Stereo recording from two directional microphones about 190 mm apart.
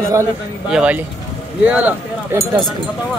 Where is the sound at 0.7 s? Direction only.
5° right (ahead or behind).